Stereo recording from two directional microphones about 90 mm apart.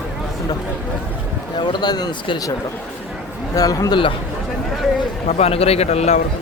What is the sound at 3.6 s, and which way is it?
Speech, 45° left (ahead or behind).